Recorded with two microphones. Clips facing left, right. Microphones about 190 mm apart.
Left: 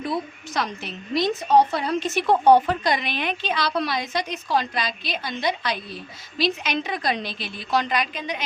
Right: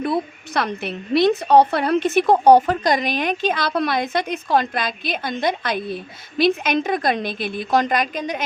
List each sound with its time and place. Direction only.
0.0 s a woman's voice: 60° right (ahead or behind)